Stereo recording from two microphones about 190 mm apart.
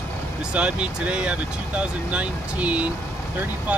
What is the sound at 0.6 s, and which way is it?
Speech, 5° right (ahead or behind).